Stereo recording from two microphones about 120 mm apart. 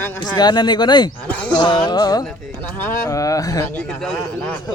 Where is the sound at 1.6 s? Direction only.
40° left (ahead or behind).